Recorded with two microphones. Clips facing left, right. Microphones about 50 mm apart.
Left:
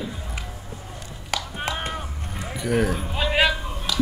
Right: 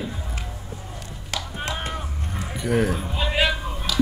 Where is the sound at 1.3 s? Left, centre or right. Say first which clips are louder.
Left 2 dB; centre.